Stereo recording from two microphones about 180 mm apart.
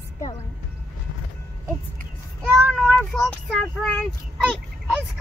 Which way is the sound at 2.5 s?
5° right (ahead or behind).